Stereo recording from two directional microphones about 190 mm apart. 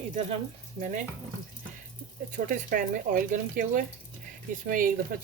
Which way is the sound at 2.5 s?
45° right (ahead or behind).